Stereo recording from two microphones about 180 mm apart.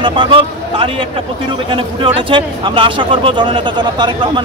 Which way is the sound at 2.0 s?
30° right (ahead or behind).